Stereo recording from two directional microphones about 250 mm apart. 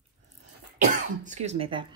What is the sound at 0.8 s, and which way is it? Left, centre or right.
Speech, right.